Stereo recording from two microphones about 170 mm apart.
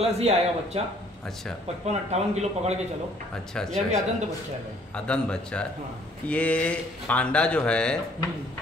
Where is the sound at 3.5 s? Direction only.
5° left (ahead or behind).